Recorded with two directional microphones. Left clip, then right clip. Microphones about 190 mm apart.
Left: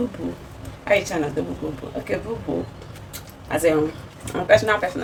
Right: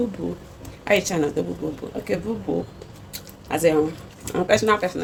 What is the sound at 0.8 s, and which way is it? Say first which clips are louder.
Speech: left 1 dB; 40° right (ahead or behind).